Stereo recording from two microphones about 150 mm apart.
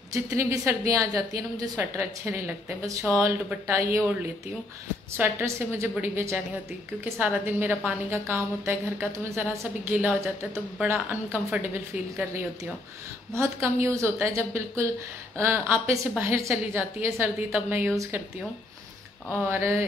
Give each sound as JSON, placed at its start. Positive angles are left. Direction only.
{"t": 0.1, "sound": "a woman's voice", "side_deg": -20}
{"t": 19.3, "sound": "a woman's voice", "side_deg": -15}